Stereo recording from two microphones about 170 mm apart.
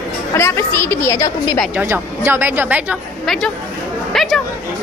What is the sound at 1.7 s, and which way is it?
A woman's voice, 10° right (ahead or behind).